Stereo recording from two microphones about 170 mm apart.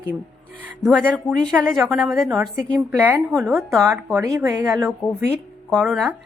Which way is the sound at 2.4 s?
15° right (ahead or behind).